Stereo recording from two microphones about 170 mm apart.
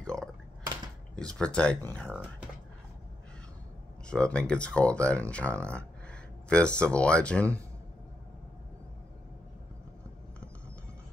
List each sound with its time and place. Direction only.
0.0 s a sound: 5° left (ahead or behind)
1.1 s speech: 5° left (ahead or behind)
4.1 s speech: 5° left (ahead or behind)